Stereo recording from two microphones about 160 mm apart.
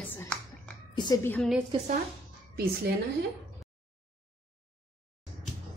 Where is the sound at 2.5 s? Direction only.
75° right (ahead or behind).